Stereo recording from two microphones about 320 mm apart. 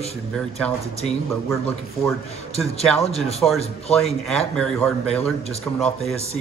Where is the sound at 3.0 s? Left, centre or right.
Centre.